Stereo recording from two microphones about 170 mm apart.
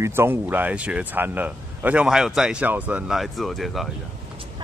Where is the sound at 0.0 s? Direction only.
15° right (ahead or behind).